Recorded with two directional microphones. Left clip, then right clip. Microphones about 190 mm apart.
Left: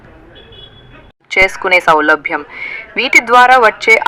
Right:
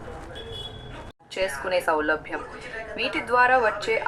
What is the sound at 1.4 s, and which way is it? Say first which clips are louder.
Speech: left 15 dB; 60° left (ahead or behind).